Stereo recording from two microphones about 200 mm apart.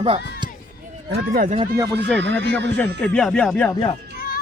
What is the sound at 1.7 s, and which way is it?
Speech, 15° right (ahead or behind).